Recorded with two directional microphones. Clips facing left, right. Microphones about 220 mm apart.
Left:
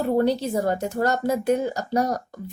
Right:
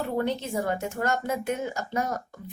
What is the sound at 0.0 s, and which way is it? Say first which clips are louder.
Speech: left 7 dB; 35° left (ahead or behind).